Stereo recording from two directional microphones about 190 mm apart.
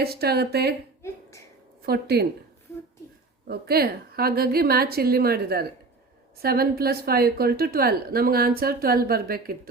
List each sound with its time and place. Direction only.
0.0 s speech: 55° right (ahead or behind)
1.8 s speech: 55° right (ahead or behind)
3.4 s a woman's voice: 55° right (ahead or behind)